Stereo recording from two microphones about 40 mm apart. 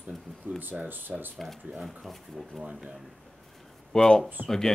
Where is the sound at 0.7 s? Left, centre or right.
Right.